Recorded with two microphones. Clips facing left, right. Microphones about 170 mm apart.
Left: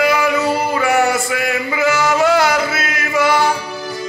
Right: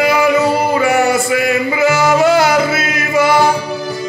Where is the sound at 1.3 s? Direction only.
55° left (ahead or behind).